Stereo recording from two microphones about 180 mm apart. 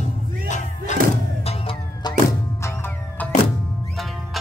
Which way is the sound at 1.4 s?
30° left (ahead or behind).